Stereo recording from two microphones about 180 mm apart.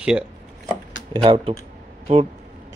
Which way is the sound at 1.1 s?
30° right (ahead or behind).